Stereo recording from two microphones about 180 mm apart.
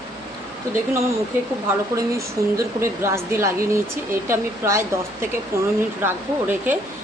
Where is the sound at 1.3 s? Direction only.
10° right (ahead or behind).